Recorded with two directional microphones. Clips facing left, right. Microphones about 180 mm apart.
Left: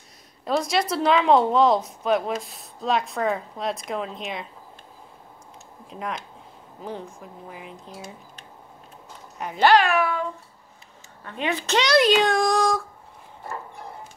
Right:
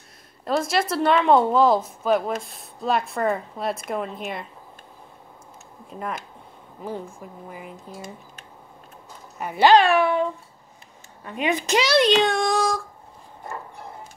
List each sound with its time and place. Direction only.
0.5 s a woman's voice: centre (ahead or behind)
5.9 s a woman's voice: 5° right (ahead or behind)
9.4 s a woman's voice: 5° right (ahead or behind)
9.7 s a child's voice: 25° right (ahead or behind)
11.2 s speech: 15° right (ahead or behind)
11.9 s speech: centre (ahead or behind)